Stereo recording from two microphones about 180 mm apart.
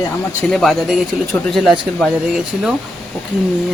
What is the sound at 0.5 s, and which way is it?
Speech, centre (ahead or behind).